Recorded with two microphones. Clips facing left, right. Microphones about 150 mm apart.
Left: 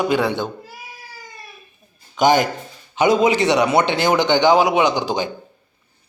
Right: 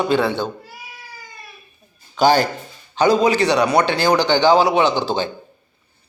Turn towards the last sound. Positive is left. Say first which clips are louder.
# even
turn(degrees=15)  # may be behind; listen again after turning